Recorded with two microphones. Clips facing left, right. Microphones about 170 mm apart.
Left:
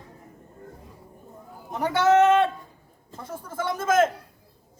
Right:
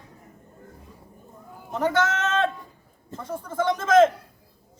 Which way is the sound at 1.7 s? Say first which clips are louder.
Left 4 dB; 10° left (ahead or behind).